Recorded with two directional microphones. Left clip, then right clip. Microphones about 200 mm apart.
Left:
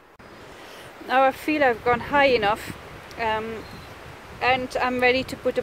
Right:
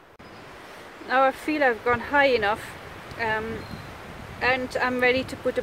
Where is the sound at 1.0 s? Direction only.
20° left (ahead or behind).